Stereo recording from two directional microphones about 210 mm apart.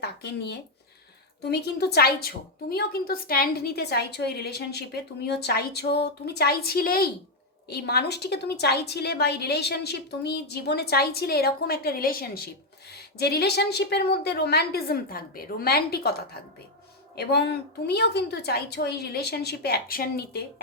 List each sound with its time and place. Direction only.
0.0 s a woman's voice: 50° left (ahead or behind)